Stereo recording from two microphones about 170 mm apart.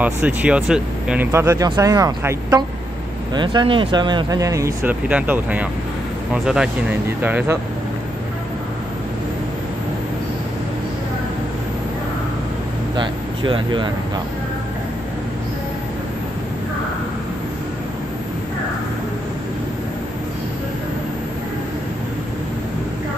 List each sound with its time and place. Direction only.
0.0 s speech: 10° right (ahead or behind)
12.9 s speech: 30° right (ahead or behind)